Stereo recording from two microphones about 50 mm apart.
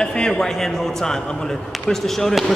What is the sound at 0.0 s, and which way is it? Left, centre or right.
Speech, centre.